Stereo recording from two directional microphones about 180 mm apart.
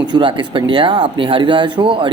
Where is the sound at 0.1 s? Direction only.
25° right (ahead or behind).